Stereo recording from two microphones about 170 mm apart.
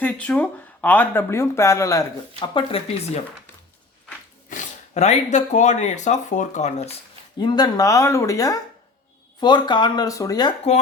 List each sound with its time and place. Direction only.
0.0 s speech: 10° left (ahead or behind); by 3.0 s 35° left (ahead or behind)
4.4 s speech: 45° left (ahead or behind)
7.3 s speech: 25° left (ahead or behind)